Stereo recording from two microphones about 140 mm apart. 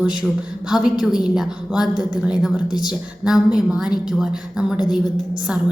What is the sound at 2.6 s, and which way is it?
Speech, 30° left (ahead or behind).